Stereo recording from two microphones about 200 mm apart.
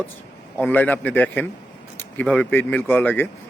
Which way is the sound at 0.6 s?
10° left (ahead or behind).